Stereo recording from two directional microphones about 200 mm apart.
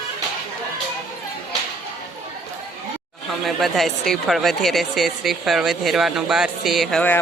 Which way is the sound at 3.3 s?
Centre (ahead or behind).